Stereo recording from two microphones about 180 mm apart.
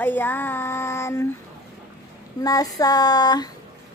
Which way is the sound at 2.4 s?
20° left (ahead or behind).